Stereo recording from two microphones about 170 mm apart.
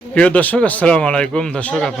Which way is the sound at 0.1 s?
10° left (ahead or behind).